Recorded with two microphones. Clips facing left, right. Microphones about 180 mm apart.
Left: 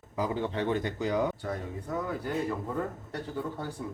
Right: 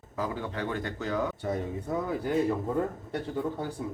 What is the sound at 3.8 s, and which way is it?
Speech, 15° right (ahead or behind).